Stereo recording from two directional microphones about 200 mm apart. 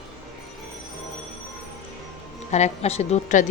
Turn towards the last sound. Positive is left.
turn(degrees=35)  # may be behind; listen again after turning